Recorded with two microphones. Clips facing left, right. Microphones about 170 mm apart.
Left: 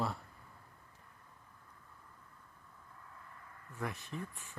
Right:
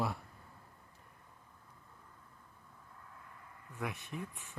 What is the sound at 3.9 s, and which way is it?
Speech, 15° right (ahead or behind).